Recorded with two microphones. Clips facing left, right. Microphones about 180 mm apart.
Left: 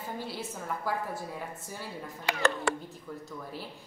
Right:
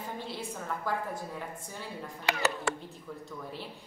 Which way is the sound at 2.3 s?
90° right.